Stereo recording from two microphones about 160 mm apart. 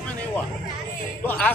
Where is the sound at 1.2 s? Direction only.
10° left (ahead or behind).